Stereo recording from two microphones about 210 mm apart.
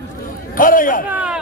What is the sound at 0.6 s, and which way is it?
Speech, 40° left (ahead or behind).